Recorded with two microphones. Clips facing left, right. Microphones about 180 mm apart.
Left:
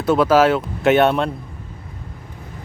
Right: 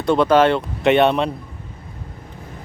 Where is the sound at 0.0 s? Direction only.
5° left (ahead or behind).